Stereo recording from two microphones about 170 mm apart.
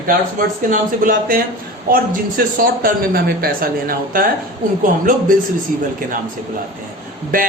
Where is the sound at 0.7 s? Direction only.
55° right (ahead or behind).